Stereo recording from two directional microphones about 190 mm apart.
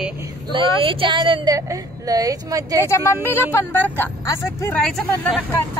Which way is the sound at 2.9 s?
15° left (ahead or behind).